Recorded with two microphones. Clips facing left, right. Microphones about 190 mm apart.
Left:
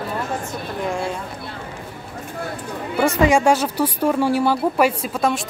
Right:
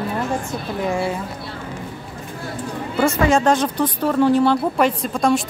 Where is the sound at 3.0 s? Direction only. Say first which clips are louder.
Even; 10° left (ahead or behind).